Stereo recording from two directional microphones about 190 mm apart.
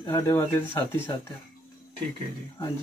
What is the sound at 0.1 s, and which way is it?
Speech, 15° left (ahead or behind).